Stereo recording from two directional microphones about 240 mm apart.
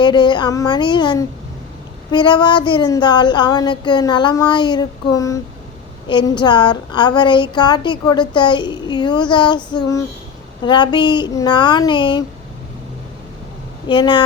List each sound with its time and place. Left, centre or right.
0.0 s a woman's voice: centre
2.1 s a sound: centre
6.1 s a woman's voice: centre
10.6 s a woman's voice: centre
13.8 s a woman's voice: centre